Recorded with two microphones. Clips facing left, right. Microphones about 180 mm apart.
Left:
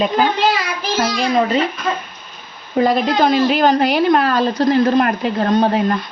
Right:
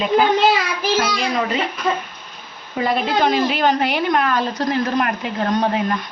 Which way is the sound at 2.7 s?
40° left (ahead or behind).